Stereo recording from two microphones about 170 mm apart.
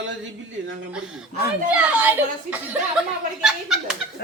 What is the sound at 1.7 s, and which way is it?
A woman's voice, 10° right (ahead or behind).